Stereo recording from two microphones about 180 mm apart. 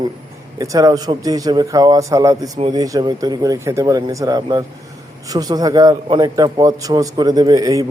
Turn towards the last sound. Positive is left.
turn(degrees=-20)  # may be behind; listen again after turning